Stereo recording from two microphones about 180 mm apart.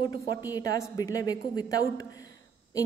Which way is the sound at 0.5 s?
20° left (ahead or behind).